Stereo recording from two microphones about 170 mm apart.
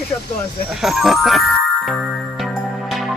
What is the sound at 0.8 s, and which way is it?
Speech, centre (ahead or behind).